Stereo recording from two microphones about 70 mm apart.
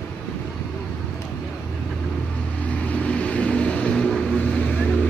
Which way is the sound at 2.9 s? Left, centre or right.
Centre.